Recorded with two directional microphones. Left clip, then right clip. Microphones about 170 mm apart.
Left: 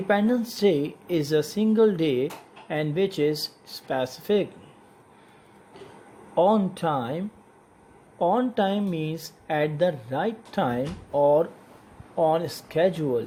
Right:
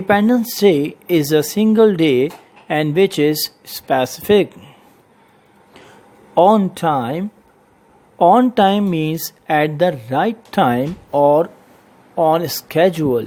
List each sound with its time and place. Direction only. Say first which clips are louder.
0.1 s speech: right 9 dB; 40° right (ahead or behind)
6.3 s speech: right 9 dB; 40° right (ahead or behind)